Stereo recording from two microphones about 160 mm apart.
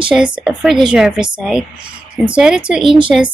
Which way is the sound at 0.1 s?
5° right (ahead or behind).